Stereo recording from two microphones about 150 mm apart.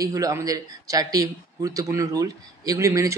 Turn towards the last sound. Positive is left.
turn(degrees=-20)  # may be behind; listen again after turning